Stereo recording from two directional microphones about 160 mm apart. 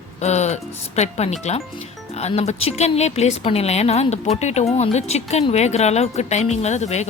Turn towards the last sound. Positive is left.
turn(degrees=45)  # may be behind; listen again after turning